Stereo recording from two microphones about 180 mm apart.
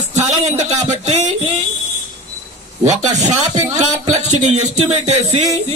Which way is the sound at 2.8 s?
40° right (ahead or behind).